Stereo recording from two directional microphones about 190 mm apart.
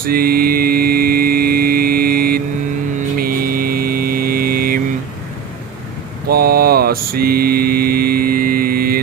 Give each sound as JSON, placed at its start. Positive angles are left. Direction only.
{"t": 0.0, "sound": "a sound", "side_deg": -50}
{"t": 3.2, "sound": "mains hum", "side_deg": -50}
{"t": 6.2, "sound": "mantra", "side_deg": -55}